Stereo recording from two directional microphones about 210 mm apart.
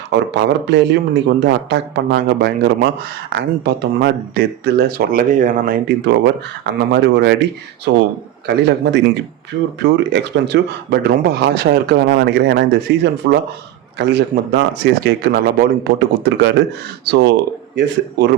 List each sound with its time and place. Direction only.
0.1 s speech: 55° right (ahead or behind)